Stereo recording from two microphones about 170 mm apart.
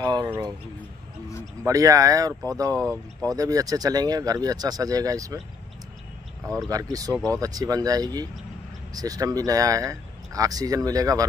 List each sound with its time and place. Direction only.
0.0 s a sound: 20° right (ahead or behind)
1.6 s speech: 20° right (ahead or behind)
2.7 s speech: 10° left (ahead or behind)
3.3 s speech: 20° right (ahead or behind)
6.4 s speech: 5° left (ahead or behind)
6.7 s speech: 20° right (ahead or behind)